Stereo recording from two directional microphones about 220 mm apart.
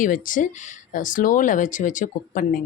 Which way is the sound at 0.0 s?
35° left (ahead or behind).